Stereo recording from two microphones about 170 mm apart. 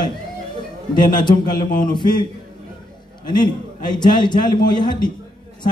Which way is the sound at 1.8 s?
25° left (ahead or behind).